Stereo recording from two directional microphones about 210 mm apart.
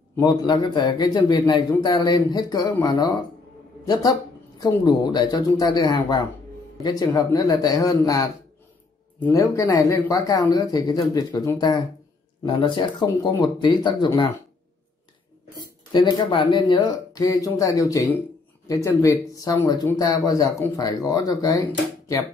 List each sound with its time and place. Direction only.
0.1 s speech: 15° left (ahead or behind)
15.6 s speech: 20° left (ahead or behind)